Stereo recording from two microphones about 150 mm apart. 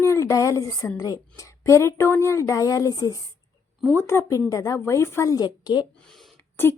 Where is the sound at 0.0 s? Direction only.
20° left (ahead or behind).